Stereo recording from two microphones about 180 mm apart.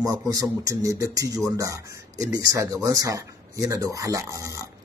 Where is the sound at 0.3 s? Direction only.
20° right (ahead or behind).